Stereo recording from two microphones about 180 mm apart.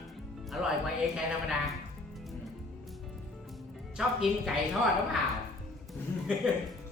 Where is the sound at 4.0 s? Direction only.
Centre (ahead or behind).